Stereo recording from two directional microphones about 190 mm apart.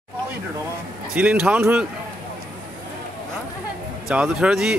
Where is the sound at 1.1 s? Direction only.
5° right (ahead or behind).